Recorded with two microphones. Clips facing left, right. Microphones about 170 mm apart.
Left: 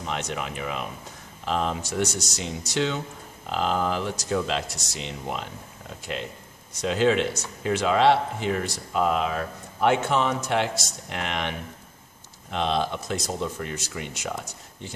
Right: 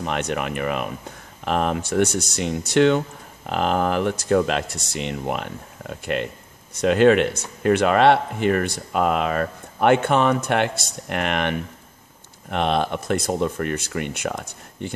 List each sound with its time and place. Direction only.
0.0 s speech: 60° right (ahead or behind)